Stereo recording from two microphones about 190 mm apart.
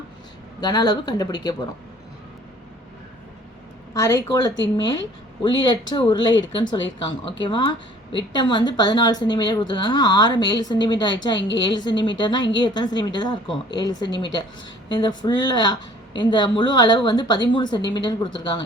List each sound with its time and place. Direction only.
0.6 s a woman's voice: 20° left (ahead or behind)
3.9 s a woman's voice: 15° left (ahead or behind)
11.3 s a woman's voice: 70° left (ahead or behind)
11.6 s a woman's voice: 25° left (ahead or behind)